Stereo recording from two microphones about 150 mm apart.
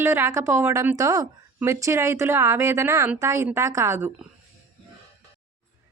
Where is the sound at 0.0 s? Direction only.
15° right (ahead or behind).